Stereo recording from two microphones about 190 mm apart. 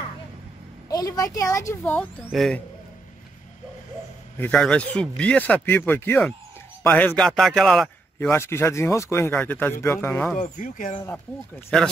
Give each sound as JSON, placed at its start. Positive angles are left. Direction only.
{"t": 0.8, "sound": "speech", "side_deg": 20}
{"t": 2.2, "sound": "speech", "side_deg": 0}
{"t": 4.4, "sound": "speech", "side_deg": 5}
{"t": 10.4, "sound": "speech", "side_deg": 45}